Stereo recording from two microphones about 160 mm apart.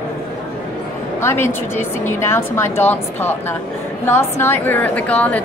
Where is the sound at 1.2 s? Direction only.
15° left (ahead or behind).